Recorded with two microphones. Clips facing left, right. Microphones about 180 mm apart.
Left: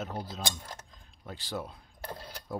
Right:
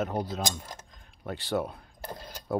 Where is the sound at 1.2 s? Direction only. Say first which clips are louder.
Right 8 dB; 65° right (ahead or behind).